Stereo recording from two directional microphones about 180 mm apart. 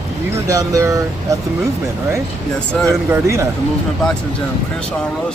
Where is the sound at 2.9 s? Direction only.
15° right (ahead or behind).